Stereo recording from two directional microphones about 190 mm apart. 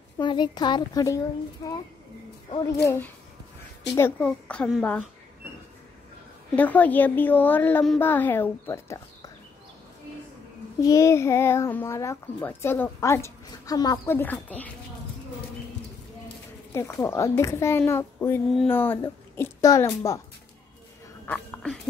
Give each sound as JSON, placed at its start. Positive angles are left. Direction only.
{"t": 0.2, "sound": "a woman's voice", "side_deg": 25}
{"t": 3.9, "sound": "a child's voice", "side_deg": 10}
{"t": 6.5, "sound": "a child's voice", "side_deg": 10}
{"t": 10.8, "sound": "a child's voice", "side_deg": 15}
{"t": 16.7, "sound": "a child's voice", "side_deg": 15}
{"t": 21.3, "sound": "a sound", "side_deg": 5}